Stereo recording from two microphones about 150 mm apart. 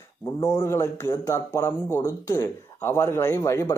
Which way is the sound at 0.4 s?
20° left (ahead or behind).